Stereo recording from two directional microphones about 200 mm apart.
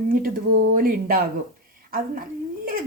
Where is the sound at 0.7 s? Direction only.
45° right (ahead or behind).